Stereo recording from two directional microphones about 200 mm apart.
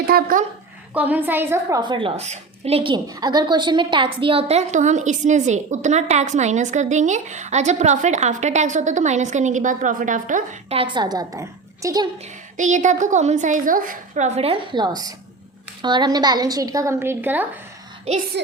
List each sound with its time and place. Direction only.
0.1 s speech: 45° right (ahead or behind)
0.9 s a woman's voice: 10° right (ahead or behind)
1.8 s a woman's voice: 25° right (ahead or behind); by 10.8 s 40° right (ahead or behind)
10.8 s a woman's voice: 25° right (ahead or behind)
12.5 s a woman's voice: 40° right (ahead or behind)
14.3 s a woman's voice: 30° right (ahead or behind); by 17.4 s 10° right (ahead or behind)
18.1 s a woman's voice: 30° right (ahead or behind)